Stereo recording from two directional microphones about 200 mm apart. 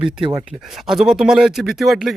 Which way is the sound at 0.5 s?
Centre (ahead or behind).